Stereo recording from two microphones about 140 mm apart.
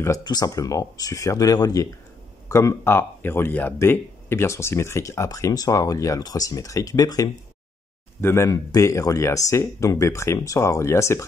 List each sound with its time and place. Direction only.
0.0 s speech: 25° left (ahead or behind)